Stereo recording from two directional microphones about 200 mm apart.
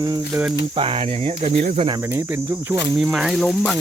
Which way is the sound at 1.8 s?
20° right (ahead or behind).